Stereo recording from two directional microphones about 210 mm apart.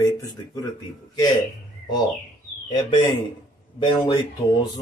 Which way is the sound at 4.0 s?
20° left (ahead or behind).